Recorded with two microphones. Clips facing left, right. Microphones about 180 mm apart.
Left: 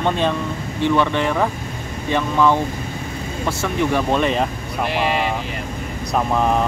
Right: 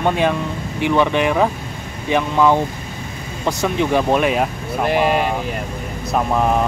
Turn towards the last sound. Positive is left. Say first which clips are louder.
# right 4 dB
turn(degrees=-50)  # may be behind; listen again after turning